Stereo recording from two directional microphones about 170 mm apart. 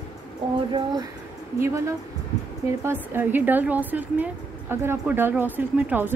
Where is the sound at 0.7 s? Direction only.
25° right (ahead or behind).